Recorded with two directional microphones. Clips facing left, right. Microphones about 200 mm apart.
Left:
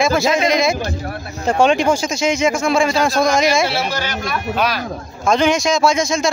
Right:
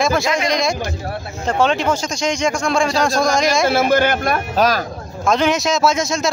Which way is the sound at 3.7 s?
50° right (ahead or behind).